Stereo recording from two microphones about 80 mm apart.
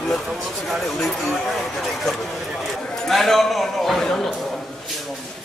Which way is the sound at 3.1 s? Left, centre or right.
Centre.